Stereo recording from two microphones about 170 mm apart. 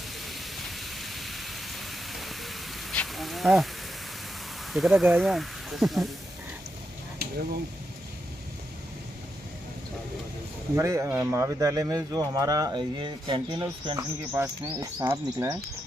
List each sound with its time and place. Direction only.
0.3 s a sound: centre (ahead or behind)
4.7 s speech: centre (ahead or behind)
10.8 s speech: 15° right (ahead or behind)
13.9 s speech: 15° right (ahead or behind)